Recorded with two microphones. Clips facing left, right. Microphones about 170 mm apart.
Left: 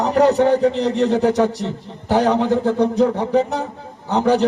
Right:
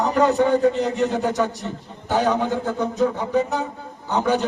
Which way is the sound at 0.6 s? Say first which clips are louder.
Left 2 dB; 75° left (ahead or behind).